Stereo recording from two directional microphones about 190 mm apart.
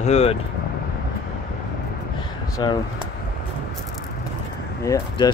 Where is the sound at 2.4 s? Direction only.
20° left (ahead or behind).